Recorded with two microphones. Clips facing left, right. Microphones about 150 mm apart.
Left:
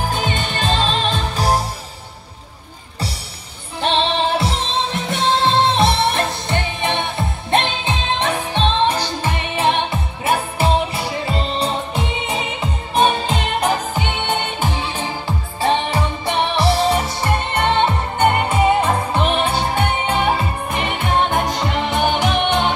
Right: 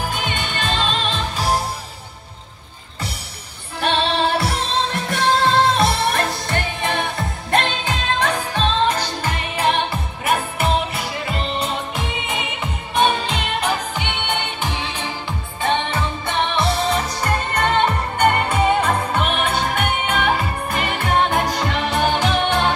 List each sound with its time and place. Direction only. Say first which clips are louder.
0.1 s music: left 3 dB; 40° left (ahead or behind)
3.8 s music: left 1 dB; 25° left (ahead or behind)
13.7 s music: left 3 dB; 40° left (ahead or behind); by 22.7 s 20° left (ahead or behind)